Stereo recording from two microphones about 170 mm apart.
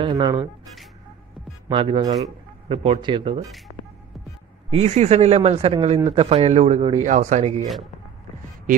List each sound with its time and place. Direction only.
0.0 s speech: 25° right (ahead or behind)
1.7 s a man's voice: 30° right (ahead or behind)
4.6 s speech: 40° right (ahead or behind)
7.6 s a man's voice: centre (ahead or behind)